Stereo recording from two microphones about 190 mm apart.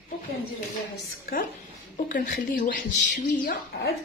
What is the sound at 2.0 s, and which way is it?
Speech, 45° left (ahead or behind).